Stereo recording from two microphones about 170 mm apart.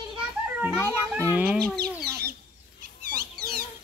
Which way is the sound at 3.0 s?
65° right (ahead or behind).